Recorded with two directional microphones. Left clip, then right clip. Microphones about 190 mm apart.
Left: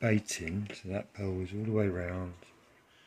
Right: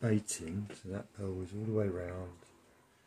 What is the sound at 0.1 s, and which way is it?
Speech, 25° left (ahead or behind).